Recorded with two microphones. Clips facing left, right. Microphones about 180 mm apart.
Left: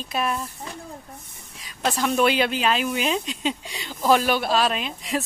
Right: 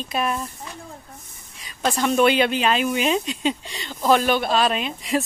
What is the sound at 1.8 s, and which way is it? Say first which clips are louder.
Speech: right 2 dB; centre (ahead or behind).